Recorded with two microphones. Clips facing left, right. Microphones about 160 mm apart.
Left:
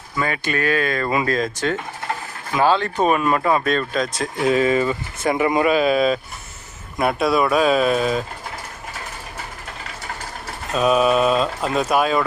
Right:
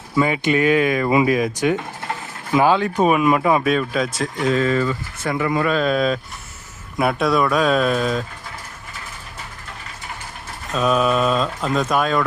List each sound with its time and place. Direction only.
0.2 s speech: 20° right (ahead or behind); by 8.2 s 5° left (ahead or behind)
10.8 s speech: 5° left (ahead or behind)